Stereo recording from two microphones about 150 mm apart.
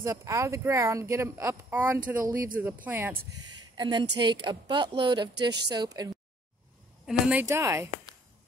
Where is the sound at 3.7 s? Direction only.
30° right (ahead or behind).